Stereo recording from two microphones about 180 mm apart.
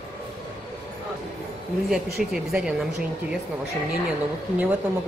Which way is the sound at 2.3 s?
5° right (ahead or behind).